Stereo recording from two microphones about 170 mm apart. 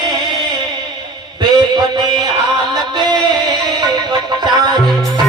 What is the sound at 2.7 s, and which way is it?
Music, 25° right (ahead or behind).